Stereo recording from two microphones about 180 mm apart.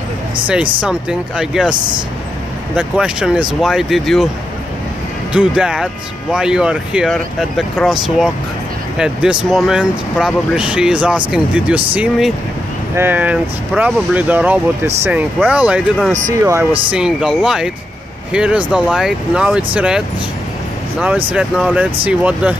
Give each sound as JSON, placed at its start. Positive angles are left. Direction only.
{"t": 0.7, "sound": "speech", "side_deg": -5}
{"t": 5.3, "sound": "speech", "side_deg": -5}
{"t": 16.9, "sound": "speech", "side_deg": -5}
{"t": 21.3, "sound": "speech", "side_deg": -5}